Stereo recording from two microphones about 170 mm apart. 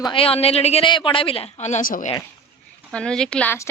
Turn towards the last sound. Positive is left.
turn(degrees=10)  # may be behind; listen again after turning